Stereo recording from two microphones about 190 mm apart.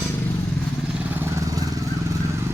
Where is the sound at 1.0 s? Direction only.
10° right (ahead or behind).